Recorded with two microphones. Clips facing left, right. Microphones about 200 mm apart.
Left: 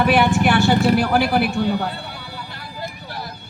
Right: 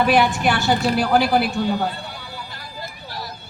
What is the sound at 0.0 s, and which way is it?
Vehicle, 55° left (ahead or behind).